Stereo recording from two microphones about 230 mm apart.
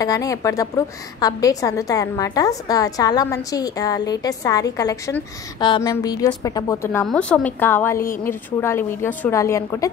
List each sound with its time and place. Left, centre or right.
0.0 s a woman's voice: centre